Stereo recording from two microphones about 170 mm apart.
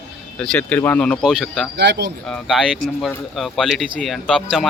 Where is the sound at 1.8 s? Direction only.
90° right.